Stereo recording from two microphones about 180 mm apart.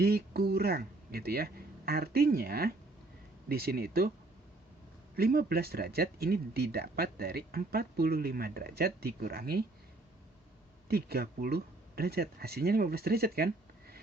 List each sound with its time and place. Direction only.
0.0 s speech: 60° right (ahead or behind)
5.1 s speech: 55° right (ahead or behind)
10.8 s speech: 60° right (ahead or behind)